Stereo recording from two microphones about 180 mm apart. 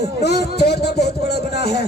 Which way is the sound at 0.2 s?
65° left (ahead or behind).